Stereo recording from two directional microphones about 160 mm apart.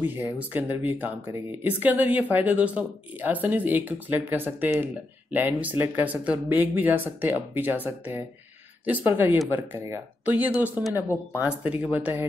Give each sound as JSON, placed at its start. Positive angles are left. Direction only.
{"t": 0.0, "sound": "speech", "side_deg": -10}